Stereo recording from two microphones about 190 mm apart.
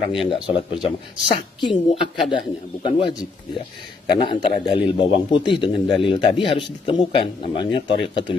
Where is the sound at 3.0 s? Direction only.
20° left (ahead or behind).